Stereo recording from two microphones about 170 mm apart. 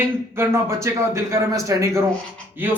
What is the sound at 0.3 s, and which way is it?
Speech, 15° right (ahead or behind).